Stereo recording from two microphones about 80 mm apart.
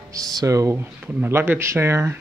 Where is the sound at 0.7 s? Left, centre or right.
Right.